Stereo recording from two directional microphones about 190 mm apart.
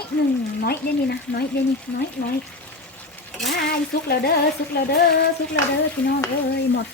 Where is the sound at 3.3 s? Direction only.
Centre (ahead or behind).